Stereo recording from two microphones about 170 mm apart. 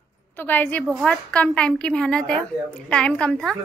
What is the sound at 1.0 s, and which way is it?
A woman's voice, 5° left (ahead or behind).